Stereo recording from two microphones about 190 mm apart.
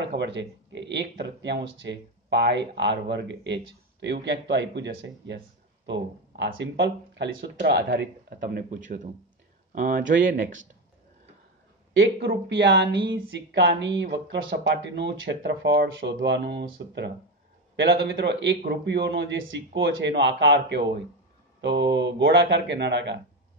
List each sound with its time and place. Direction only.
0.0 s speech: 65° right (ahead or behind)
8.4 s speech: 45° right (ahead or behind)
10.0 s speech: 75° right (ahead or behind)
11.9 s speech: 65° right (ahead or behind)